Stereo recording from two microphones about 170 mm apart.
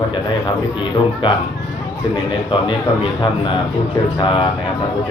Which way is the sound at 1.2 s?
30° left (ahead or behind).